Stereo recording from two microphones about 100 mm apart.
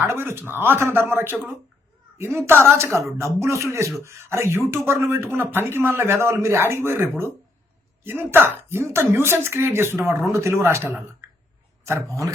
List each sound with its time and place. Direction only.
0.0 s speech: 25° right (ahead or behind)